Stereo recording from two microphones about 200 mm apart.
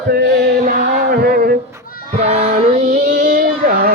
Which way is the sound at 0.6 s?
50° right (ahead or behind).